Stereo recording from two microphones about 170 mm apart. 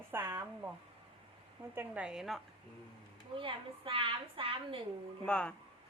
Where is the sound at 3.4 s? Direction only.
30° right (ahead or behind).